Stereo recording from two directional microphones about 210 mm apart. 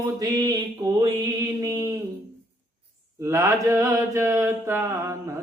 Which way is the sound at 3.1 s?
15° right (ahead or behind).